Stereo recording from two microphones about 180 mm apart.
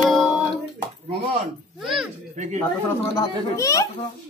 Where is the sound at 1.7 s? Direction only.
Centre (ahead or behind).